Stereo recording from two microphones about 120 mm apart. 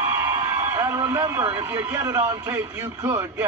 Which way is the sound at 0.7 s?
25° right (ahead or behind).